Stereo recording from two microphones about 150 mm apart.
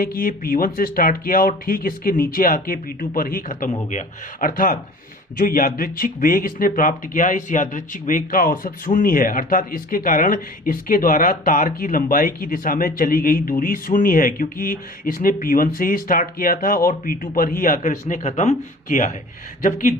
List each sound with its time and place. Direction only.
0.0 s speech: 70° left (ahead or behind); by 19.1 s 55° left (ahead or behind)